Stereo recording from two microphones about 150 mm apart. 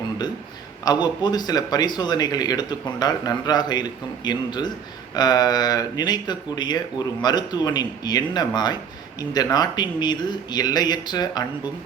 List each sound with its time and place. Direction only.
0.9 s speech: 30° left (ahead or behind)